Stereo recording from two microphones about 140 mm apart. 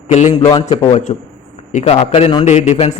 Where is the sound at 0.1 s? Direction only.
55° left (ahead or behind).